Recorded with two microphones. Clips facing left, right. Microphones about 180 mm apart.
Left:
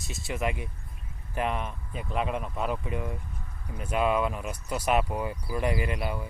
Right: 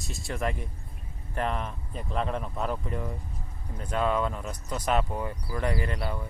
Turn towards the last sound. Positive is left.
turn(degrees=15)  # may be behind; listen again after turning